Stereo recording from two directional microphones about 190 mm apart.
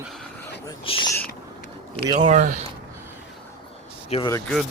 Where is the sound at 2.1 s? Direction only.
40° right (ahead or behind).